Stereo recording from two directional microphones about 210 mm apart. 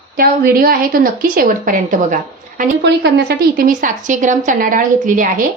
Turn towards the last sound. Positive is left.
turn(degrees=-40)  # may be behind; listen again after turning